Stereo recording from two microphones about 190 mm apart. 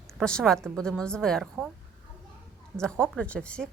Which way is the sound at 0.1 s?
5° left (ahead or behind).